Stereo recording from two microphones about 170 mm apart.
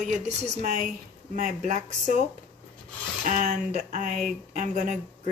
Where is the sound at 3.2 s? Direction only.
45° right (ahead or behind).